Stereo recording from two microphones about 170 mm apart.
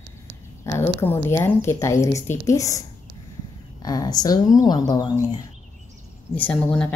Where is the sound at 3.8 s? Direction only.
25° left (ahead or behind).